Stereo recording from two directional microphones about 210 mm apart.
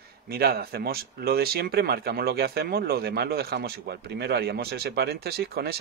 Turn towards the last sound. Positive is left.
turn(degrees=-50)  # may be behind; listen again after turning